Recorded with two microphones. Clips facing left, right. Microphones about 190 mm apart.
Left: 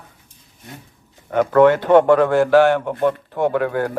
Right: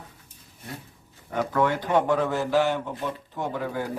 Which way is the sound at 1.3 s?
75° left (ahead or behind).